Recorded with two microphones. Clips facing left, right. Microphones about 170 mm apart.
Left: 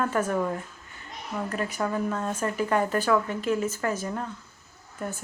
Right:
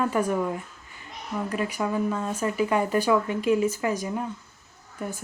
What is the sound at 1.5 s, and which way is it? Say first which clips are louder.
Speech: right 2 dB; 10° right (ahead or behind).